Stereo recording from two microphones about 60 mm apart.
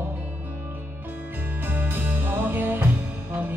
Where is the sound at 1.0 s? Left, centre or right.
Right.